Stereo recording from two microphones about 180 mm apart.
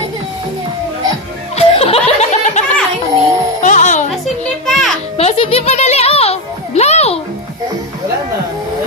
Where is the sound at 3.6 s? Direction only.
45° left (ahead or behind).